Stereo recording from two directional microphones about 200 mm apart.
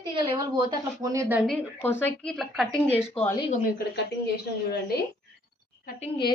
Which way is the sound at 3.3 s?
30° left (ahead or behind).